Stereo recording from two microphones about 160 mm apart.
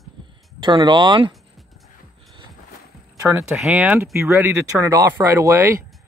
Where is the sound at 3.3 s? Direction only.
5° right (ahead or behind).